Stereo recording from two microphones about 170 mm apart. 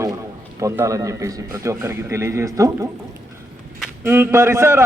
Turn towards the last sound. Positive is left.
turn(degrees=-15)  # may be behind; listen again after turning